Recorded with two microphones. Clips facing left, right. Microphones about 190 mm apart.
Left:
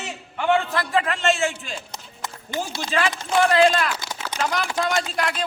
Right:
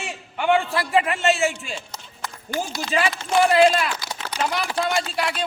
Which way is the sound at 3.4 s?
5° right (ahead or behind).